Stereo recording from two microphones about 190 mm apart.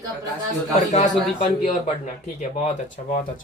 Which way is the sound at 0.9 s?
40° left (ahead or behind).